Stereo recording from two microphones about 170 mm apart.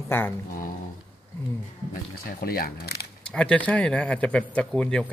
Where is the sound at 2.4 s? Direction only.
60° left (ahead or behind).